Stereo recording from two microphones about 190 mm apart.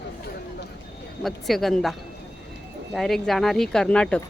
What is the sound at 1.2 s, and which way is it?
Speech, centre (ahead or behind).